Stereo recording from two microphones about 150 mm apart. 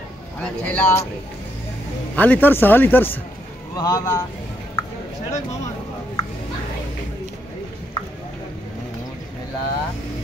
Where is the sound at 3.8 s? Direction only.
25° left (ahead or behind).